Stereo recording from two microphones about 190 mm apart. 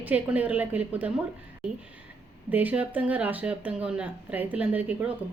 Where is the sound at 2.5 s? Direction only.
10° right (ahead or behind).